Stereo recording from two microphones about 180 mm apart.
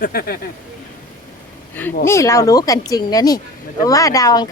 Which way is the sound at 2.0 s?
15° left (ahead or behind).